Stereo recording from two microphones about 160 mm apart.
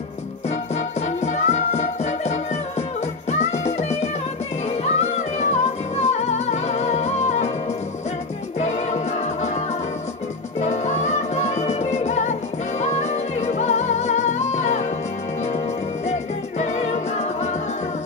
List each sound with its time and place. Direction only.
1.2 s music: 45° left (ahead or behind)
8.5 s music: 45° left (ahead or behind)
10.6 s music: 45° left (ahead or behind)
16.1 s music: 45° left (ahead or behind)